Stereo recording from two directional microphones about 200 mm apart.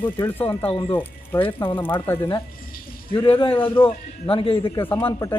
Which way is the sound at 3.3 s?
25° left (ahead or behind).